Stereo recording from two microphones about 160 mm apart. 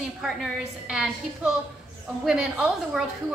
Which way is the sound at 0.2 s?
5° right (ahead or behind).